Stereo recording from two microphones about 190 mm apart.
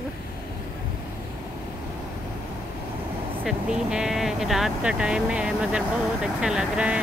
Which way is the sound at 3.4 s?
5° right (ahead or behind).